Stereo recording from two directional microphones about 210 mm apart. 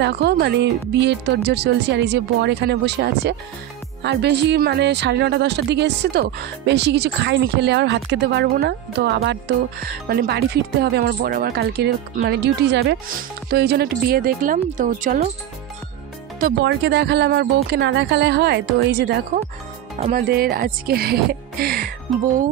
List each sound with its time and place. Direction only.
0.0 s speech: 50° right (ahead or behind)
16.3 s speech: 50° right (ahead or behind)